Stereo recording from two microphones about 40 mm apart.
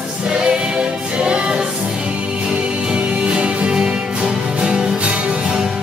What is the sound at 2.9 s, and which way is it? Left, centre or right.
Music, right.